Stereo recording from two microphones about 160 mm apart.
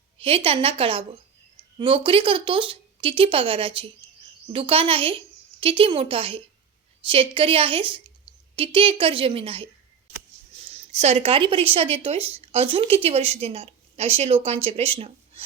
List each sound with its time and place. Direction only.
0.2 s speech: 35° right (ahead or behind)
10.7 s speech: 40° right (ahead or behind)